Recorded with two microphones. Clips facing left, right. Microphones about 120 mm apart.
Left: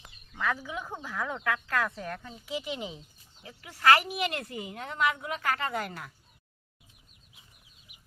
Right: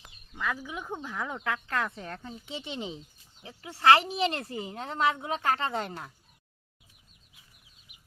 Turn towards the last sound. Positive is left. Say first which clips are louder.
# right 1 dB
turn(degrees=-25)  # may be behind; listen again after turning